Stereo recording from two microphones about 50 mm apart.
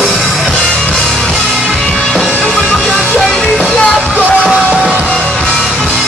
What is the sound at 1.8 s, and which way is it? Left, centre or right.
Music, centre.